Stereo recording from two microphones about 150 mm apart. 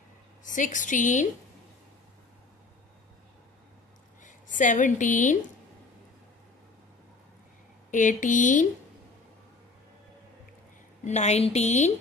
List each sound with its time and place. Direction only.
0.4 s a woman's voice: 60° left (ahead or behind)
4.2 s speech: 60° left (ahead or behind)
7.9 s a woman's voice: 60° left (ahead or behind)
11.1 s a woman's voice: 50° left (ahead or behind)